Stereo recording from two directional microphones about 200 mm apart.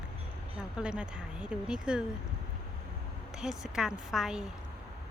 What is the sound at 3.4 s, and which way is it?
Speech, centre (ahead or behind).